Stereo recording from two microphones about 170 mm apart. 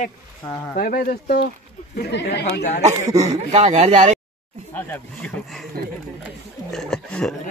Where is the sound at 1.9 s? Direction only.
75° left (ahead or behind).